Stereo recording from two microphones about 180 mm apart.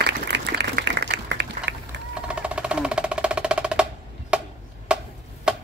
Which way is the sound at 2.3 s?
5° right (ahead or behind).